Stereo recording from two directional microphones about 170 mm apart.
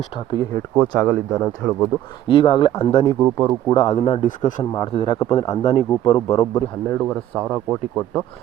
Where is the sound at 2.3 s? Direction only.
30° left (ahead or behind).